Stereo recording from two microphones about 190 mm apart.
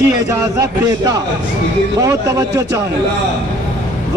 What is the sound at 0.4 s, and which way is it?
A man's voice, 15° right (ahead or behind).